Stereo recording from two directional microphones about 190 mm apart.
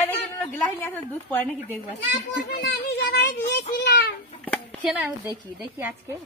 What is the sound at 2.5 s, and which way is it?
Speech, 55° left (ahead or behind).